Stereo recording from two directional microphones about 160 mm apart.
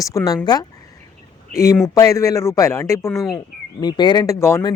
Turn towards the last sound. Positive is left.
turn(degrees=15)  # may be behind; listen again after turning